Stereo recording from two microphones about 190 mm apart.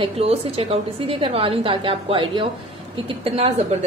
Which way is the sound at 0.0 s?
30° right (ahead or behind).